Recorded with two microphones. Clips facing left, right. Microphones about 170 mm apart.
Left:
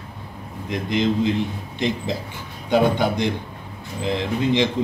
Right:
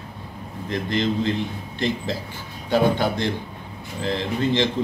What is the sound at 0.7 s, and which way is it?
Speech, 15° left (ahead or behind).